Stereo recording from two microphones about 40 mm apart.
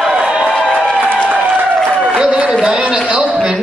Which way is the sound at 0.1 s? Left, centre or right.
Right.